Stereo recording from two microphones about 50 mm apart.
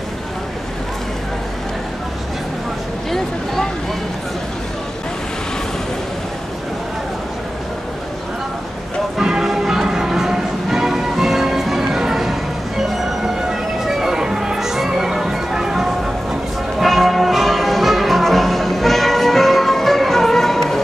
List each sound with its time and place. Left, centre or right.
9.2 s change ringing: centre
16.8 s music: centre